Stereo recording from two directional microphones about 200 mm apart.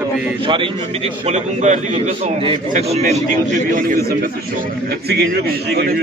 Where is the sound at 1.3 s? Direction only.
35° right (ahead or behind).